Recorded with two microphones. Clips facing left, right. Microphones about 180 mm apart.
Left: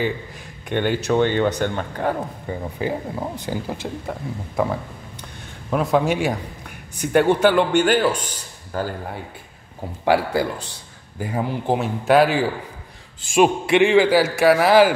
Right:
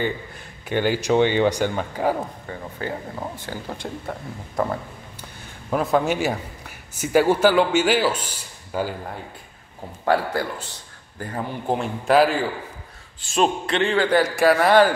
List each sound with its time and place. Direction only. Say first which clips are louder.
0.7 s speech: even; 5° right (ahead or behind)
2.4 s a man's voice: left 5 dB; 15° left (ahead or behind)
3.7 s a man's voice: left 2 dB; centre (ahead or behind)
10.0 s a man's voice: left 3 dB; 10° left (ahead or behind)